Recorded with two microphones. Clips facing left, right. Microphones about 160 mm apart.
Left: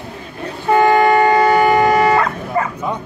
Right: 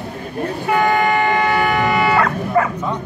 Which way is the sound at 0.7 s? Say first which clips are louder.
Left 5 dB; 40° left (ahead or behind).